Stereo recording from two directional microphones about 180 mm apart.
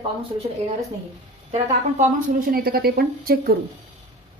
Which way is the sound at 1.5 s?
45° right (ahead or behind).